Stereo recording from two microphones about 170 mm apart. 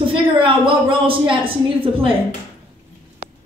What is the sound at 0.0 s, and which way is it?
A woman's voice, 30° right (ahead or behind).